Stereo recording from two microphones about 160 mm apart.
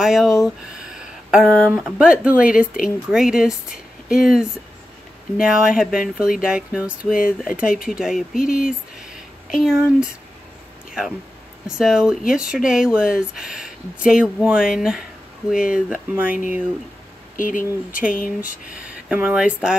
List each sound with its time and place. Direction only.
0.0 s speech: centre (ahead or behind)
9.1 s a sound: 5° right (ahead or behind)
11.6 s speech: 5° right (ahead or behind)
15.5 s speech: 60° left (ahead or behind)
15.9 s speech: 10° right (ahead or behind)
16.3 s speech: 55° left (ahead or behind)
18.8 s speech: 10° right (ahead or behind)